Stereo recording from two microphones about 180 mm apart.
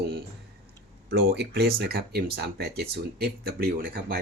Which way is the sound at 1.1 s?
60° right (ahead or behind).